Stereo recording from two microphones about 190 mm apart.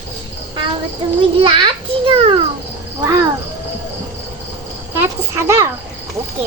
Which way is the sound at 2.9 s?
15° right (ahead or behind).